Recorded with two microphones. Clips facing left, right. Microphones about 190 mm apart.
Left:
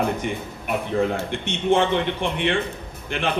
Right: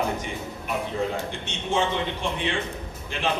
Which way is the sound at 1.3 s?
60° left (ahead or behind).